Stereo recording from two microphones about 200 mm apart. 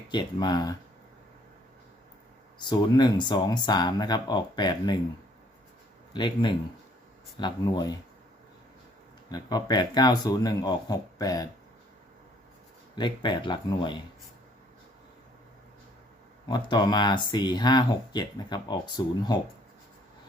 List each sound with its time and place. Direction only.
0.1 s speech: 20° left (ahead or behind)
2.6 s speech: 20° left (ahead or behind)
6.1 s speech: 25° left (ahead or behind)
9.3 s speech: 20° left (ahead or behind)
13.0 s speech: 20° left (ahead or behind)
16.5 s speech: 20° left (ahead or behind)